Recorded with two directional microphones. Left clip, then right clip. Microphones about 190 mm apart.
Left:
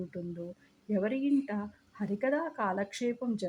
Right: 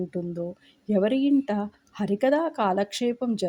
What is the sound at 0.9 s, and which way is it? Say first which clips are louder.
Speech: right 8 dB; 25° right (ahead or behind).